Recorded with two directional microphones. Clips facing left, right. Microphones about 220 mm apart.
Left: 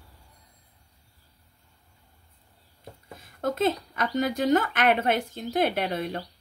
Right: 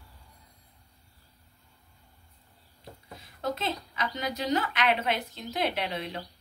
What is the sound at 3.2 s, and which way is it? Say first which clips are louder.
A woman's voice: left 6 dB; 50° left (ahead or behind).